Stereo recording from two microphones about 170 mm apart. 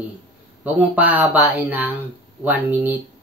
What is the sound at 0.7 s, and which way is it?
Speech, 10° right (ahead or behind).